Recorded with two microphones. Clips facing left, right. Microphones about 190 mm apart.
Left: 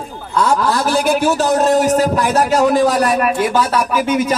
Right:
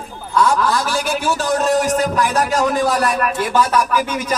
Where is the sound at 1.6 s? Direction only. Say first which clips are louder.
Left 3 dB; 35° left (ahead or behind).